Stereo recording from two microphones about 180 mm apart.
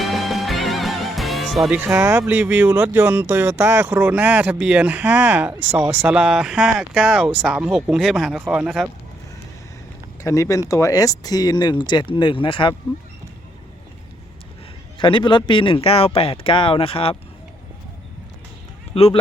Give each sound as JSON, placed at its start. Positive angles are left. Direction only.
{"t": 0.0, "sound": "speech", "side_deg": 0}
{"t": 10.2, "sound": "speech", "side_deg": 20}
{"t": 14.9, "sound": "speech", "side_deg": 25}
{"t": 18.9, "sound": "speech", "side_deg": 35}